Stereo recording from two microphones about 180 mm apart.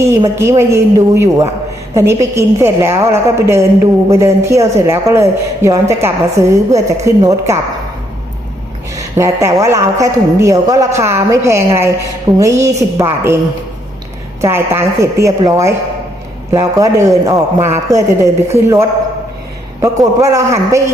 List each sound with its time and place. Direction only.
0.0 s a woman's voice: 15° right (ahead or behind)
9.0 s a woman's voice: 15° right (ahead or behind)
14.4 s a woman's voice: 15° right (ahead or behind)